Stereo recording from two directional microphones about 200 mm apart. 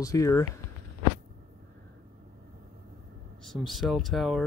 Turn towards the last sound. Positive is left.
turn(degrees=0)  # may be behind; listen again after turning